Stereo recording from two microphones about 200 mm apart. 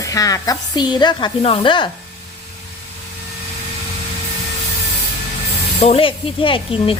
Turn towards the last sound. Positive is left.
turn(degrees=25)  # may be behind; listen again after turning